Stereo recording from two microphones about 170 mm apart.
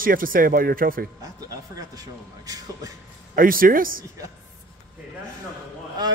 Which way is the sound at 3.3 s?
55° right (ahead or behind).